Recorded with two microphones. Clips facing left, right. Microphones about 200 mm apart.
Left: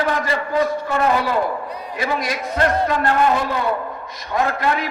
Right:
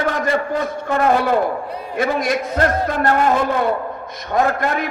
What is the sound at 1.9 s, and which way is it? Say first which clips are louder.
A man's voice: right 5 dB; 50° right (ahead or behind).